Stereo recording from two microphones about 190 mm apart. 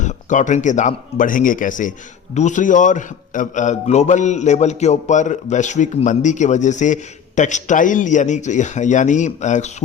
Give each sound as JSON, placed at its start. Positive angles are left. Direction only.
{"t": 0.0, "sound": "a man's voice", "side_deg": 40}